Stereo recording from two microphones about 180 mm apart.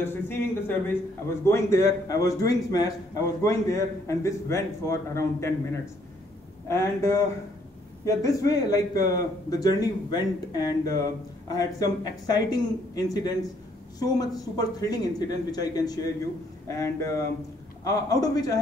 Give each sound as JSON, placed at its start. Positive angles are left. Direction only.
{"t": 0.0, "sound": "a man's voice", "side_deg": 15}